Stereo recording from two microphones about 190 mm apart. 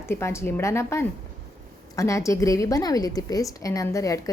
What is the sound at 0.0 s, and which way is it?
A woman's voice, 15° left (ahead or behind).